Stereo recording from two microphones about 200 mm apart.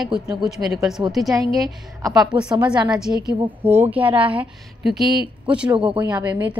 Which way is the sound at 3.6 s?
10° right (ahead or behind).